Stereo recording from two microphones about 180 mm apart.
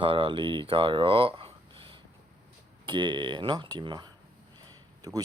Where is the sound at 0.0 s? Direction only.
30° right (ahead or behind).